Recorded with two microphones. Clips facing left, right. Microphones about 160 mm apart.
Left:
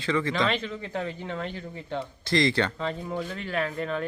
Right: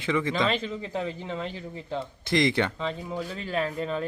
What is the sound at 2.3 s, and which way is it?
Speech, 20° right (ahead or behind).